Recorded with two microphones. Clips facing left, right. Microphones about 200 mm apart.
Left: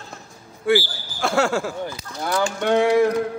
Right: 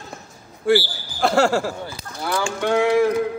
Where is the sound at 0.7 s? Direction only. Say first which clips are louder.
Right 1 dB; centre (ahead or behind).